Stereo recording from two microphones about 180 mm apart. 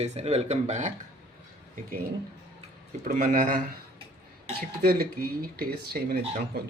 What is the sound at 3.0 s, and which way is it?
Speech, 50° right (ahead or behind).